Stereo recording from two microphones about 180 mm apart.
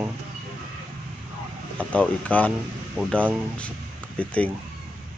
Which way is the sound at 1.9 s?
10° left (ahead or behind).